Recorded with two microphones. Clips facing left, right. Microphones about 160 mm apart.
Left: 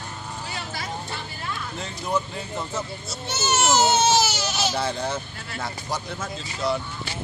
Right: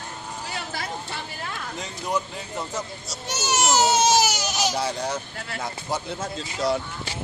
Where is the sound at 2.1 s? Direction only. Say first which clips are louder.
Left 1 dB; 10° right (ahead or behind).